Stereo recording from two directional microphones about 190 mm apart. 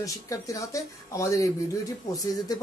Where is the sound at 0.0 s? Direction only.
15° left (ahead or behind).